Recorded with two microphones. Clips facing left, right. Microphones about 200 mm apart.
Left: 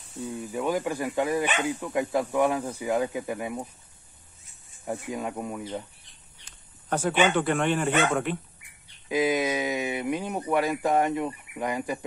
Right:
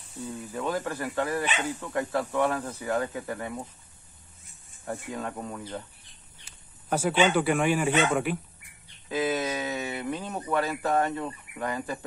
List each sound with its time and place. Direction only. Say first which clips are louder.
0.5 s speech: left 3 dB; 10° left (ahead or behind)
4.8 s speech: left 2 dB; 15° left (ahead or behind)
6.4 s a sound: even; 10° right (ahead or behind)
7.2 s speech: even; 5° right (ahead or behind)
9.1 s speech: left 3 dB; 15° left (ahead or behind)